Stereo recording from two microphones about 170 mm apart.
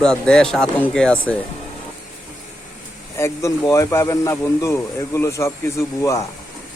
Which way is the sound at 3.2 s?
15° left (ahead or behind).